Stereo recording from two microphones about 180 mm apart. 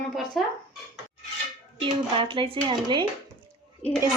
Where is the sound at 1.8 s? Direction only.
30° right (ahead or behind).